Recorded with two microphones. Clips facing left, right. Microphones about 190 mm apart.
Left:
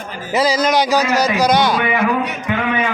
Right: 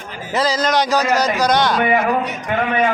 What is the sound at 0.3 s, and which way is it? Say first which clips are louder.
A man's voice: left 2 dB; 10° left (ahead or behind).